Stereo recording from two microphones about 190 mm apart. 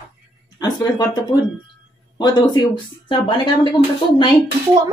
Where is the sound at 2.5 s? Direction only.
25° left (ahead or behind).